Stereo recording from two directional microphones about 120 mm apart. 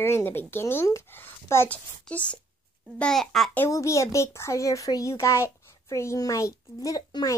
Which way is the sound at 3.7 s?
25° left (ahead or behind).